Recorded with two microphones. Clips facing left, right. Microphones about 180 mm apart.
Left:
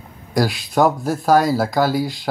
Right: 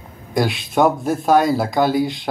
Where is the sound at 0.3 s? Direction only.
Centre (ahead or behind).